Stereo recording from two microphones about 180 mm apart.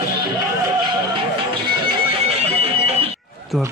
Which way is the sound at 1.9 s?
30° right (ahead or behind).